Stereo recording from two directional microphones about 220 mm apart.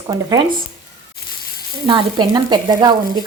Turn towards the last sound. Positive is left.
turn(degrees=-20)  # may be behind; listen again after turning